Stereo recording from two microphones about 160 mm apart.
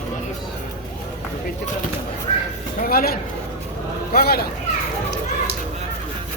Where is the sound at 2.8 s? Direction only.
65° left (ahead or behind).